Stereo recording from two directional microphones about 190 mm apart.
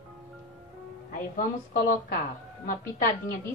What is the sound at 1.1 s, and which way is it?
Music, 45° left (ahead or behind).